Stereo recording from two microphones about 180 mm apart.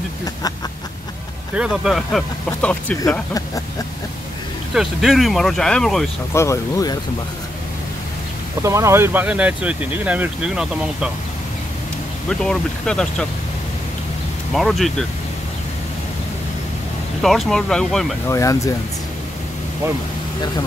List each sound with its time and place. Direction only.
1.5 s speech: 5° right (ahead or behind)
4.7 s speech: centre (ahead or behind)
6.3 s speech: 15° left (ahead or behind)
8.6 s speech: 15° right (ahead or behind)
12.3 s speech: 5° left (ahead or behind)
14.5 s speech: centre (ahead or behind)
17.2 s speech: centre (ahead or behind)
18.3 s speech: 15° left (ahead or behind)